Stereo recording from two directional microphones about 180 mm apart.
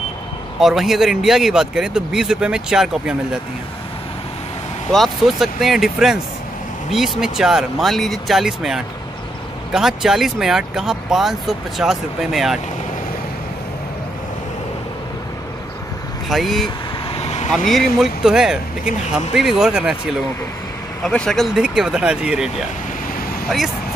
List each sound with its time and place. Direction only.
0.6 s speech: centre (ahead or behind)
4.9 s speech: centre (ahead or behind)
16.3 s speech: centre (ahead or behind)
17.2 s vehicle: 40° left (ahead or behind)
17.6 s speech: centre (ahead or behind)
21.0 s speech: 5° left (ahead or behind)